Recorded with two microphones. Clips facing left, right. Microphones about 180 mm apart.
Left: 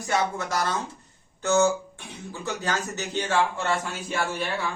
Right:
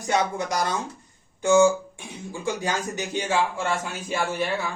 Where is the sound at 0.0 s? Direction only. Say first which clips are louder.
Right 2 dB; 20° right (ahead or behind).